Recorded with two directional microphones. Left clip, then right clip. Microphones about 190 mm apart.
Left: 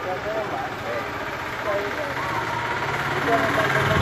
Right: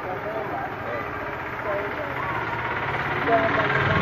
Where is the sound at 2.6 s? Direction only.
55° left (ahead or behind).